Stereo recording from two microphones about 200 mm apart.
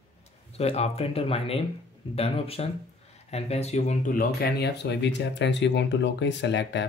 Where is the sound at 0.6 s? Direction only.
30° left (ahead or behind).